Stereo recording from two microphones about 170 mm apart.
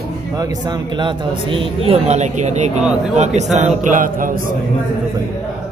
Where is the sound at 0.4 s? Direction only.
25° right (ahead or behind); by 4.3 s 50° right (ahead or behind).